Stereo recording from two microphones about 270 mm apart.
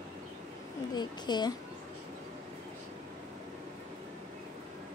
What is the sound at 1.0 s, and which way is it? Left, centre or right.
Speech, centre.